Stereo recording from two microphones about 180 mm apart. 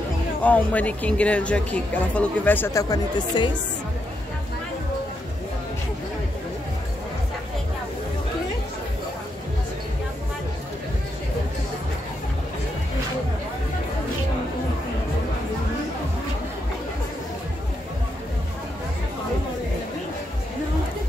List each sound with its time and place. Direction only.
0.4 s a woman's voice: 10° left (ahead or behind)